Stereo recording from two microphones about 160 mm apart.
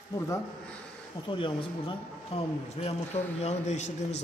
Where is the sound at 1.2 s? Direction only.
30° left (ahead or behind).